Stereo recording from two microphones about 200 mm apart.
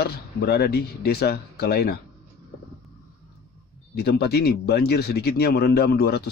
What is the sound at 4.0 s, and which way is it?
A man's voice, 55° left (ahead or behind).